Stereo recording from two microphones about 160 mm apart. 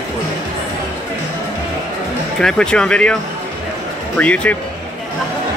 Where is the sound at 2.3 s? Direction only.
5° left (ahead or behind).